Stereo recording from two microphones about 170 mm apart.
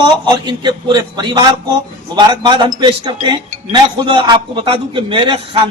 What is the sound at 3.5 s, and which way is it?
Speech, 45° right (ahead or behind).